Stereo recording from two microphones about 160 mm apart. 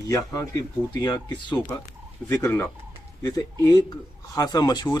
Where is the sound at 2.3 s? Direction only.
15° left (ahead or behind).